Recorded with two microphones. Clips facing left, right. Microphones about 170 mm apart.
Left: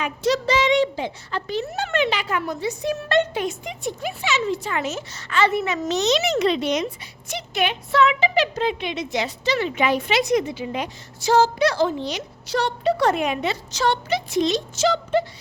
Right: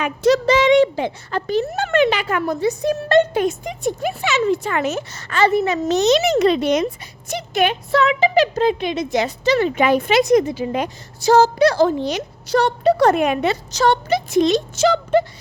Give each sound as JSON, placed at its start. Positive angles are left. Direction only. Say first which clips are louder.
{"t": 0.0, "sound": "a woman's voice", "louder": "right 6 dB", "side_deg": -50}
{"t": 5.3, "sound": "a woman's voice", "louder": "right 4 dB", "side_deg": -40}
{"t": 6.0, "sound": "a woman's voice", "louder": "right 5 dB", "side_deg": -50}